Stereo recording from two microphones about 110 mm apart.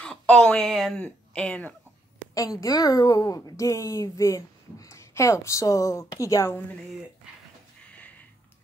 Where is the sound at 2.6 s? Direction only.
35° left (ahead or behind).